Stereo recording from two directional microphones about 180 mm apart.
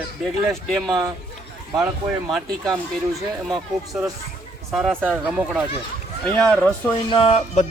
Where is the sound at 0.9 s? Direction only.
20° right (ahead or behind).